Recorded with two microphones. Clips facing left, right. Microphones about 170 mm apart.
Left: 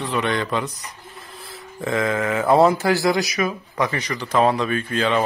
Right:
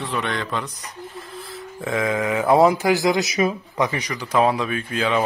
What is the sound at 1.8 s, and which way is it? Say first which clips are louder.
A man's voice: left 1 dB; 10° right (ahead or behind).